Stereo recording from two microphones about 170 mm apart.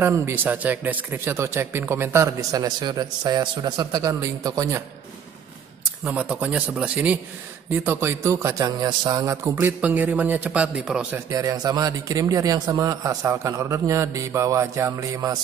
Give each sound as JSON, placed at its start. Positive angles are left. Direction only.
{"t": 0.0, "sound": "a man's voice", "side_deg": -15}
{"t": 6.0, "sound": "a man's voice", "side_deg": -10}